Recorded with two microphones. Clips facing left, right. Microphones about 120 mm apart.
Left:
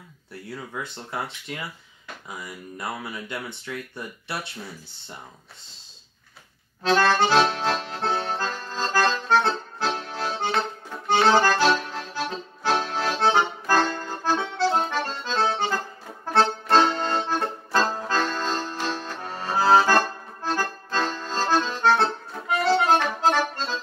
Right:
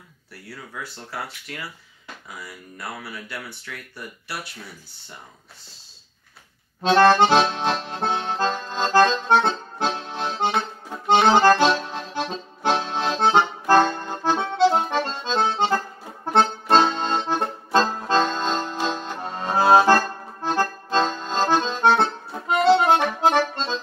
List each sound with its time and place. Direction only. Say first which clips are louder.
0.3 s speech: left 4 dB; 20° left (ahead or behind)
6.8 s accordion: right 5 dB; 20° right (ahead or behind)